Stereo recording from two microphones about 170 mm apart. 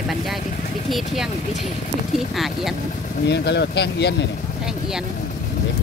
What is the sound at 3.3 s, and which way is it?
Speech, 80° left.